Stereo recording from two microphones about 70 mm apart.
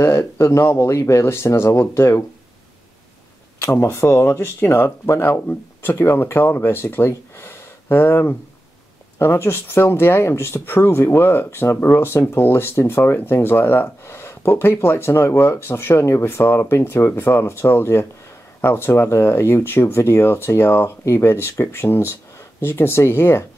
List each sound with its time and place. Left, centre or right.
0.0 s speech: left
3.6 s speech: left